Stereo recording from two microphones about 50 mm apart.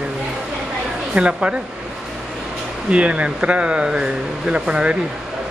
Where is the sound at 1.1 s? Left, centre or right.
Right.